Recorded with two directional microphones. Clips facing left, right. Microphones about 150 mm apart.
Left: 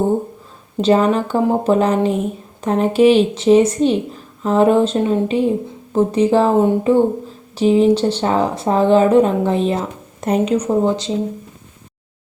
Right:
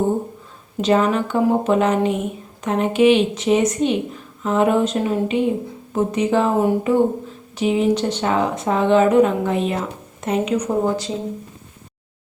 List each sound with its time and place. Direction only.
0.8 s speech: 30° left (ahead or behind)
10.8 s speech: 20° left (ahead or behind)